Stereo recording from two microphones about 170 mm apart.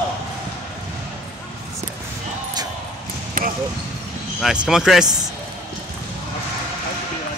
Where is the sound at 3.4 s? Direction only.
55° right (ahead or behind).